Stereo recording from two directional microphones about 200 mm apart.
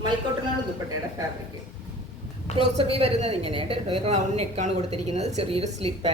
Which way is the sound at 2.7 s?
30° right (ahead or behind).